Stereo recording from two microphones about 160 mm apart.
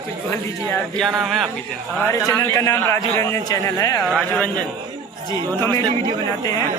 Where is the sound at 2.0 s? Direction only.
15° left (ahead or behind).